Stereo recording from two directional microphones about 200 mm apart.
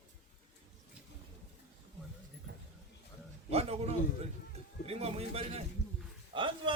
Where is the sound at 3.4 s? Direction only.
30° right (ahead or behind).